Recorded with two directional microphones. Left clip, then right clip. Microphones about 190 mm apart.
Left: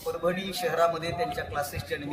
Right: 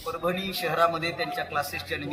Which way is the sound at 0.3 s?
20° left (ahead or behind).